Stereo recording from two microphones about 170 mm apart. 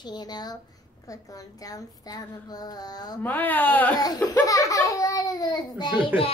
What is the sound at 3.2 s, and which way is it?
A child's voice, 10° left (ahead or behind).